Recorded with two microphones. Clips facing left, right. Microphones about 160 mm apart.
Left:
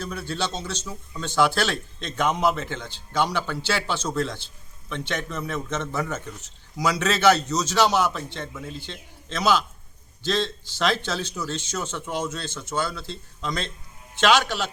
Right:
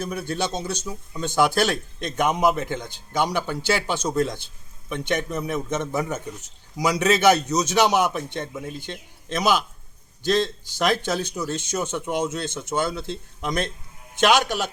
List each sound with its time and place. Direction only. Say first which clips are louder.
0.0 s speech: right 2 dB; 15° right (ahead or behind)